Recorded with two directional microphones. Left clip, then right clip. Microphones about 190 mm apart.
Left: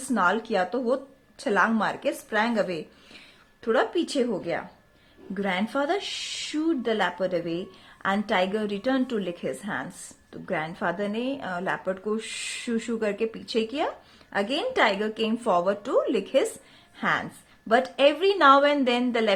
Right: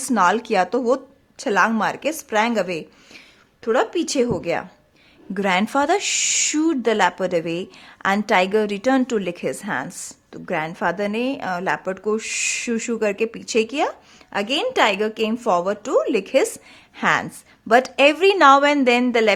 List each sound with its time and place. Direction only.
0.1 s a woman's voice: 35° right (ahead or behind)